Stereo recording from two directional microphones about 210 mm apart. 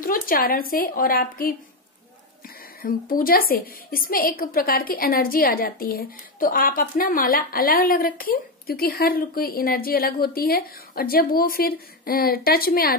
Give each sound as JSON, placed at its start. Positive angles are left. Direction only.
{"t": 0.0, "sound": "a woman's voice", "side_deg": 45}
{"t": 2.8, "sound": "a woman's voice", "side_deg": 45}